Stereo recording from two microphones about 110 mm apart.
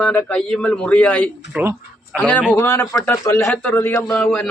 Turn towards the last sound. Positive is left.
turn(degrees=10)  # may be behind; listen again after turning